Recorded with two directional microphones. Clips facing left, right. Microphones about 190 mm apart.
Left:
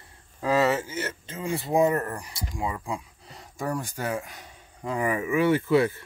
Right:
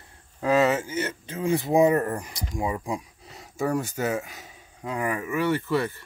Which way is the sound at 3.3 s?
5° right (ahead or behind).